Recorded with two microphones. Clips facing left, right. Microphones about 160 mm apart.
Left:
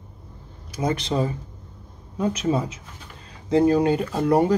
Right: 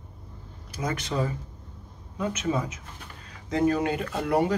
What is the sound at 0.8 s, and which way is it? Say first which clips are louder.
Speech: left 5 dB; 30° left (ahead or behind).